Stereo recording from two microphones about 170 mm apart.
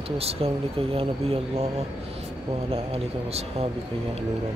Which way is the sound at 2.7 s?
35° right (ahead or behind).